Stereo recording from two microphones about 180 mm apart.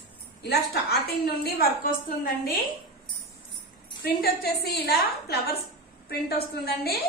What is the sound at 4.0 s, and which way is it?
A woman's voice, 60° left (ahead or behind).